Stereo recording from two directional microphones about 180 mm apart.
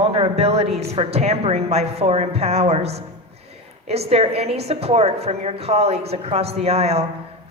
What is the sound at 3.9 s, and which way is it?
Speech, 35° right (ahead or behind).